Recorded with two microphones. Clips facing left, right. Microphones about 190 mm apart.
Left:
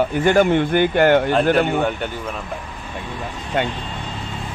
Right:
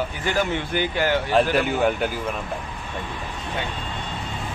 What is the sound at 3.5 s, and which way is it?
Speech, 65° left (ahead or behind).